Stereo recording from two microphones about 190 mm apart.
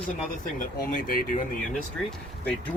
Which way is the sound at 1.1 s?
50° left (ahead or behind).